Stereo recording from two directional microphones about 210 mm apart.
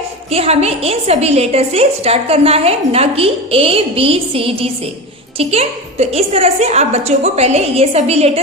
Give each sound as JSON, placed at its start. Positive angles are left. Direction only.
{"t": 0.3, "sound": "a woman's voice", "side_deg": -30}